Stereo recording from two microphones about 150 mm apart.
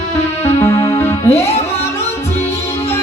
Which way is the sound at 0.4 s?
15° left (ahead or behind).